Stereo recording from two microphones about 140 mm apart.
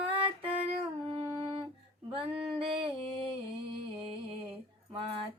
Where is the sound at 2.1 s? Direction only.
40° right (ahead or behind).